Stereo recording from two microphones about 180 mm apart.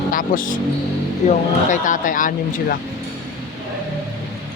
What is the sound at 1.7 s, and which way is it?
Speech, 45° left (ahead or behind).